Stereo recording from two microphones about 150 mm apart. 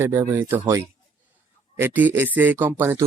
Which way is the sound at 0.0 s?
15° right (ahead or behind).